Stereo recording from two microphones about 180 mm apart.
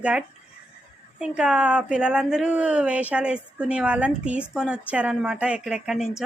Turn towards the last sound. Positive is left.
turn(degrees=0)  # may be behind; listen again after turning